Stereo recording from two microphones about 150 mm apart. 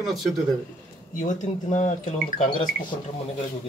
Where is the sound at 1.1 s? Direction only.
55° left (ahead or behind).